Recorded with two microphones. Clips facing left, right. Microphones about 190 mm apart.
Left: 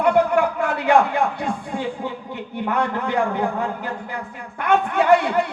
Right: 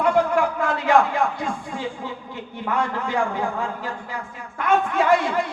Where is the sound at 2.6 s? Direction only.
60° left (ahead or behind).